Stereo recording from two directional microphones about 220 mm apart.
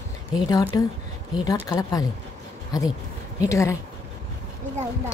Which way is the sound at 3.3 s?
15° left (ahead or behind).